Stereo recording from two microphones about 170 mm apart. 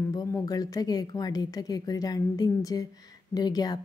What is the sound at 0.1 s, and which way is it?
A woman's voice, 20° left (ahead or behind).